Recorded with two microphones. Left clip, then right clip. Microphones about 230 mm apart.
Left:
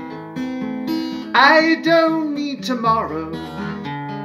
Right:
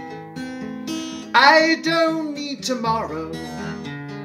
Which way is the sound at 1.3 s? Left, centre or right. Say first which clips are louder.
Left 1 dB; centre.